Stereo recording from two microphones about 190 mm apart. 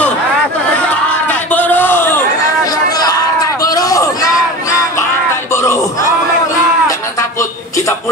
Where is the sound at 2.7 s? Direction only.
20° left (ahead or behind).